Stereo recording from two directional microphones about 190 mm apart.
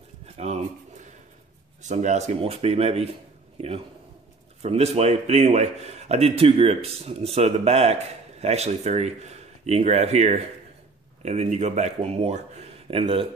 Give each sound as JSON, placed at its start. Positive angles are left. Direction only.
{"t": 0.4, "sound": "a sound", "side_deg": -40}
{"t": 1.8, "sound": "speech", "side_deg": -40}
{"t": 4.6, "sound": "speech", "side_deg": -35}